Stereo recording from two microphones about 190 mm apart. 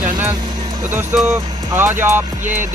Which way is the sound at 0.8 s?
10° right (ahead or behind).